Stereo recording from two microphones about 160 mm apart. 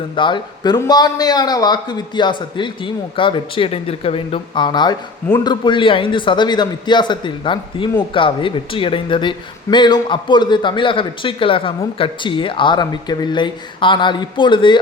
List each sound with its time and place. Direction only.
0.2 s a man's voice: 30° left (ahead or behind)